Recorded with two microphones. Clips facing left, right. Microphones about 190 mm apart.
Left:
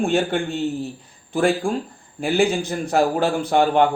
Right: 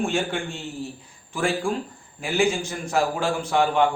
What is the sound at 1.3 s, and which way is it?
Speech, 35° left (ahead or behind).